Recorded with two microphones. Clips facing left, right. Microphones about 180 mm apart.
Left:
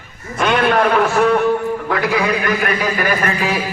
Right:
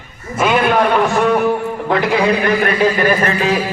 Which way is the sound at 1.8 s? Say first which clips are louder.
Right 6 dB; 25° right (ahead or behind).